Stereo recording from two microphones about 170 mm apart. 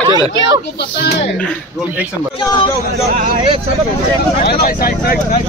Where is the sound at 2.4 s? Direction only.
25° left (ahead or behind).